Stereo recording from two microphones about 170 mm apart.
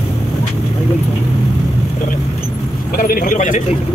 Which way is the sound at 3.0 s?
55° left (ahead or behind).